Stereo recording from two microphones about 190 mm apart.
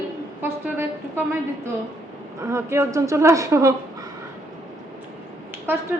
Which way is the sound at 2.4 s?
15° right (ahead or behind).